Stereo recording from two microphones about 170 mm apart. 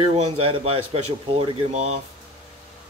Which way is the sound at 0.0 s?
35° right (ahead or behind).